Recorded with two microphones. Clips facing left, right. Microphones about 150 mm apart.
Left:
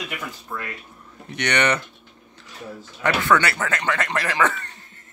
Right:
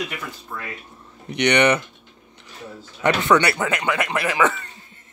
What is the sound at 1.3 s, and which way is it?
Speech, 15° right (ahead or behind).